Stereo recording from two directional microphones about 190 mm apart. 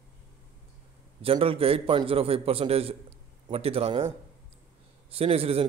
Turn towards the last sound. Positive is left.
turn(degrees=-30)  # may be behind; listen again after turning